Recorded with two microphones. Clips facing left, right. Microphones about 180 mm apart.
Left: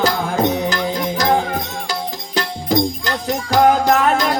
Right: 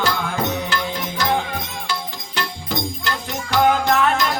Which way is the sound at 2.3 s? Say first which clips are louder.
Left 8 dB; 40° left (ahead or behind).